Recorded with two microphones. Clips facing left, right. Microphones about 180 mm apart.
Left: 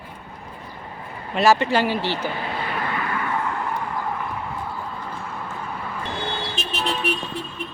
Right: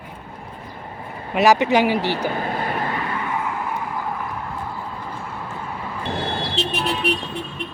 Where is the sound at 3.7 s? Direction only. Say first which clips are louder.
Even; 5° right (ahead or behind).